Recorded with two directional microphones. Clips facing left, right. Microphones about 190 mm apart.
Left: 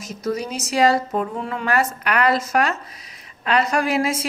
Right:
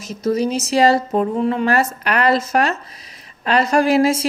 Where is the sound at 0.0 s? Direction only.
25° right (ahead or behind).